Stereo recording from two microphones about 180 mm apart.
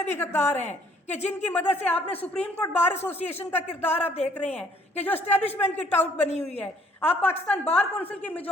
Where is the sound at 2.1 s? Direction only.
35° left (ahead or behind).